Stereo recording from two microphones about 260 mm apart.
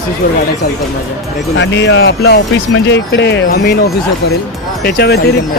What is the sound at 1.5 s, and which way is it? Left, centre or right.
Speech, left.